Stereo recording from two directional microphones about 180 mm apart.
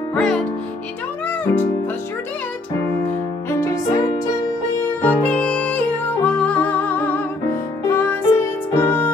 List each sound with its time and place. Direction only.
0.1 s music: 5° left (ahead or behind)
3.4 s music: 15° left (ahead or behind)
5.0 s music: 5° left (ahead or behind)